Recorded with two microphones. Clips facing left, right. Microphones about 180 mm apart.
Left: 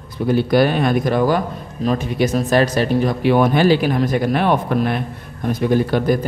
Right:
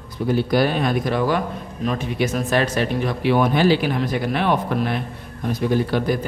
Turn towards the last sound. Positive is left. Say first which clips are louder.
# left 4 dB
turn(degrees=50)  # may be behind; listen again after turning